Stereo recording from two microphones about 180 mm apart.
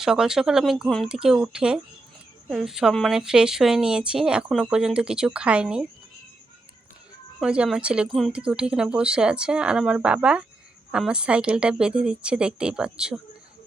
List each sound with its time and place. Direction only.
0.0 s speech: 5° right (ahead or behind)
7.3 s speech: 5° right (ahead or behind)